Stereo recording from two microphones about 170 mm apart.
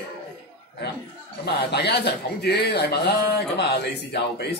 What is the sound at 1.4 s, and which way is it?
Speech, 75° left (ahead or behind).